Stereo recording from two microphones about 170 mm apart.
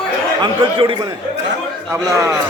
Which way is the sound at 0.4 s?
30° right (ahead or behind).